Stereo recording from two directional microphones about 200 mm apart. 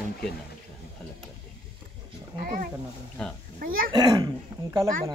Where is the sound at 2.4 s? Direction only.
45° right (ahead or behind).